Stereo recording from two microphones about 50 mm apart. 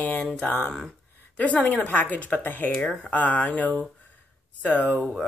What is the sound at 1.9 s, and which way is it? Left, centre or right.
Speech, left.